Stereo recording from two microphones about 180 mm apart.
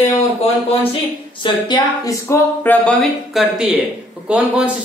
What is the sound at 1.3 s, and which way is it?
A woman's voice, 25° left (ahead or behind).